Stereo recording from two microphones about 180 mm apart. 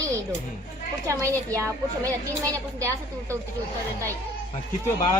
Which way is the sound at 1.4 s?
20° right (ahead or behind).